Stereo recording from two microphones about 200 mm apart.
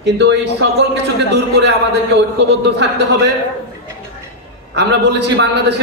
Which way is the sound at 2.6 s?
60° right (ahead or behind).